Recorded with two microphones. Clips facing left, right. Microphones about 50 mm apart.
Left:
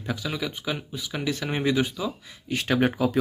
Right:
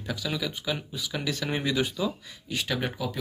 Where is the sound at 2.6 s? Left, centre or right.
Left.